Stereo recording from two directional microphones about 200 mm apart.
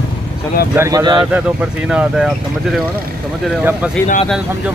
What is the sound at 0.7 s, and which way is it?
Speech, 15° right (ahead or behind).